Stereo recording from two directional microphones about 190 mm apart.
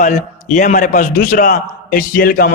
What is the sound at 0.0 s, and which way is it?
A man's voice, 40° left (ahead or behind).